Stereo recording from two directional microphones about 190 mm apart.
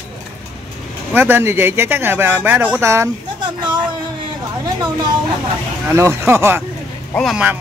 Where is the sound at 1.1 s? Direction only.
10° right (ahead or behind).